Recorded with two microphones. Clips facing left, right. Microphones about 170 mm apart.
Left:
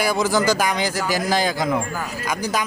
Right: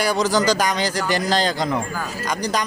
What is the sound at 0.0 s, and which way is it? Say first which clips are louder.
Speech: even; 10° left (ahead or behind).